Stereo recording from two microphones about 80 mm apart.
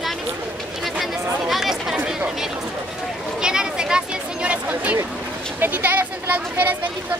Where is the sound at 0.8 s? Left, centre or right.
Centre.